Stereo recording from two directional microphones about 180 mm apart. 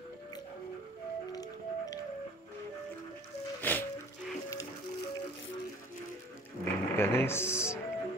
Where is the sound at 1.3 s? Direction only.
20° left (ahead or behind).